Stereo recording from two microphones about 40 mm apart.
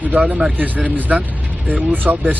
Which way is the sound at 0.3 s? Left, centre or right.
Right.